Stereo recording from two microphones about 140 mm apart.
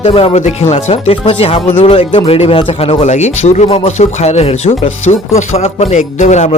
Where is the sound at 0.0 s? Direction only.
40° left (ahead or behind).